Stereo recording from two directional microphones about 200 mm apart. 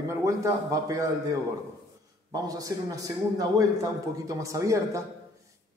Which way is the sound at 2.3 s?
20° right (ahead or behind).